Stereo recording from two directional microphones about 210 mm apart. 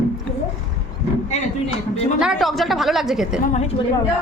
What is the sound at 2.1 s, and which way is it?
Speech, centre (ahead or behind).